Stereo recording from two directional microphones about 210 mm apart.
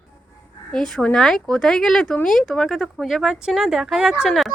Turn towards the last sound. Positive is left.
turn(degrees=0)  # may be behind; listen again after turning